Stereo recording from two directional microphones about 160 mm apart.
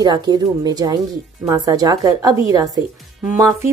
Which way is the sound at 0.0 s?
25° right (ahead or behind).